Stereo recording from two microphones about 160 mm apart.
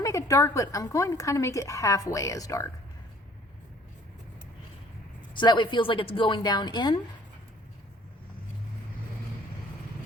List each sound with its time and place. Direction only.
0.0 s a woman's voice: 20° left (ahead or behind)
5.3 s a woman's voice: 30° left (ahead or behind)